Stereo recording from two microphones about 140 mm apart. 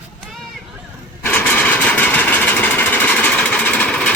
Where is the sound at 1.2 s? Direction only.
10° left (ahead or behind).